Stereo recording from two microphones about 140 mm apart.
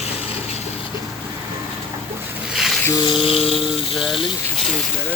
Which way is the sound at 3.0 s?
40° left (ahead or behind).